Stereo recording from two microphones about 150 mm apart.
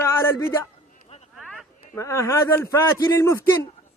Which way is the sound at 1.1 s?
45° left (ahead or behind).